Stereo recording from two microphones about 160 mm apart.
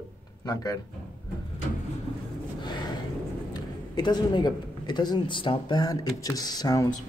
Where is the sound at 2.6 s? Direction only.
25° left (ahead or behind).